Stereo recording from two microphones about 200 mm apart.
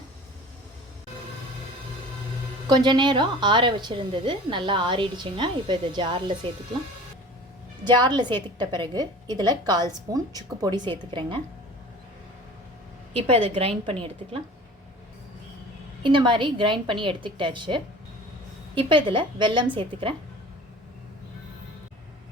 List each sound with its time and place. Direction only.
2.6 s a woman's voice: 20° right (ahead or behind)
7.9 s a woman's voice: 20° right (ahead or behind)
13.1 s a woman's voice: 30° right (ahead or behind)
16.0 s a woman's voice: 25° right (ahead or behind)